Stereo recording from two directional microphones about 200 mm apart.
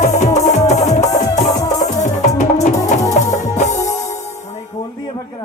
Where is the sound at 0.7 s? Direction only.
35° left (ahead or behind).